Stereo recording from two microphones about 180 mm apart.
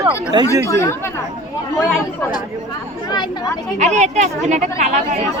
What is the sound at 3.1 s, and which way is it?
Speech, 25° left (ahead or behind).